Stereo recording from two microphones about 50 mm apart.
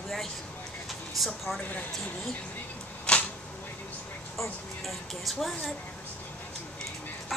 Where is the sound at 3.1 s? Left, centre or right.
Left.